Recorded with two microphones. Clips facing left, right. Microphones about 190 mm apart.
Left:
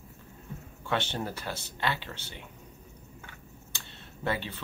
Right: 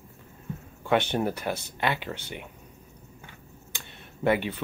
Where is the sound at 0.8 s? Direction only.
15° right (ahead or behind).